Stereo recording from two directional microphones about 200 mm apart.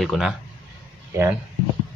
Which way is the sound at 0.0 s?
Centre (ahead or behind).